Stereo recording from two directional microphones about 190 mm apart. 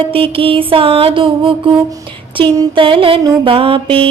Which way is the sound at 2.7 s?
25° right (ahead or behind).